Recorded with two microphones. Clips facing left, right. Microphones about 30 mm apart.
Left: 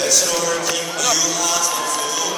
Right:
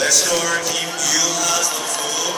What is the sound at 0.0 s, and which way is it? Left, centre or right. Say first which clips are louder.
Music: right 1 dB; centre.